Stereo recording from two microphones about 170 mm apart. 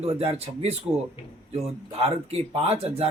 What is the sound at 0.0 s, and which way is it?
Speech, 35° right (ahead or behind).